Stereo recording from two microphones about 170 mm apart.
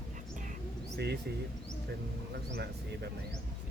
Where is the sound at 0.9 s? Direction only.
75° right (ahead or behind).